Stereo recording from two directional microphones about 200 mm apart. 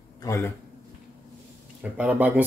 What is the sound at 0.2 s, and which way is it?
Speech, 15° left (ahead or behind).